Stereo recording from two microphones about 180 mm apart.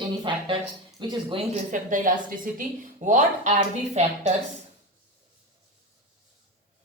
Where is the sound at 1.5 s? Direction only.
45° right (ahead or behind).